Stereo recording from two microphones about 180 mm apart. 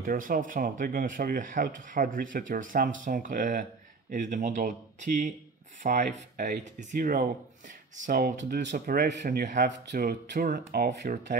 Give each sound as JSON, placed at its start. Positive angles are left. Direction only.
{"t": 0.0, "sound": "speech", "side_deg": -50}
{"t": 8.7, "sound": "speech", "side_deg": -60}